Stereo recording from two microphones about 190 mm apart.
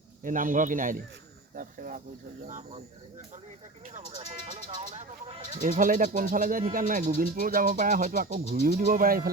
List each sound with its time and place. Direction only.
0.2 s speech: 45° right (ahead or behind)
1.5 s a sound: 45° right (ahead or behind)
2.5 s speech: 35° right (ahead or behind)
3.9 s speech: 40° right (ahead or behind)